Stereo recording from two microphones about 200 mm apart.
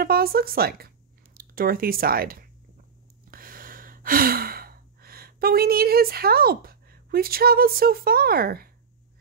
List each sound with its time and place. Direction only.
0.0 s speech: 50° right (ahead or behind)
3.3 s gasp: 45° right (ahead or behind)